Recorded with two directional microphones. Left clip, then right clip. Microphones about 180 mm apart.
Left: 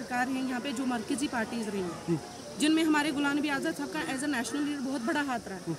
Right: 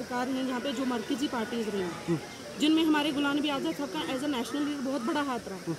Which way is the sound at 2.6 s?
50° left (ahead or behind).